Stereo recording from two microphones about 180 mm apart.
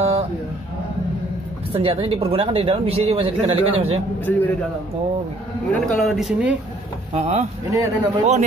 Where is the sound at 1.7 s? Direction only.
30° right (ahead or behind).